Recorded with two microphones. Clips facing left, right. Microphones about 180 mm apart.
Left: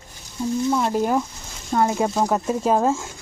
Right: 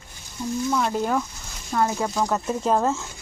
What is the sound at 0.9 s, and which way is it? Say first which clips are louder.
Speech: left 3 dB; 15° left (ahead or behind).